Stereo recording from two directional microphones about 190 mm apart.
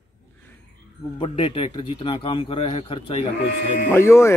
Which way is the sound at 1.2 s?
30° left (ahead or behind).